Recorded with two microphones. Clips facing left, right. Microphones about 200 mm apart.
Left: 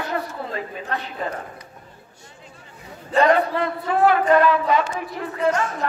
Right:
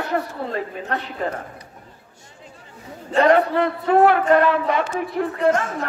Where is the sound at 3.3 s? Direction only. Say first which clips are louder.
Right 3 dB; 60° right (ahead or behind).